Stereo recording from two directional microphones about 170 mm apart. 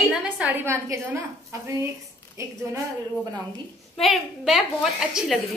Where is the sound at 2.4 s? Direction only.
15° right (ahead or behind).